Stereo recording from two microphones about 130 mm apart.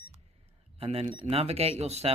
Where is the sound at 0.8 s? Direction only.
50° right (ahead or behind).